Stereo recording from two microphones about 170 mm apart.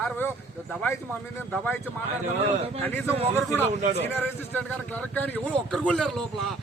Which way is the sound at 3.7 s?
40° right (ahead or behind).